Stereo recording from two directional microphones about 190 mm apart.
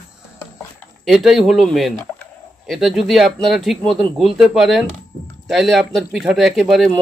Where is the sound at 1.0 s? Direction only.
Centre (ahead or behind).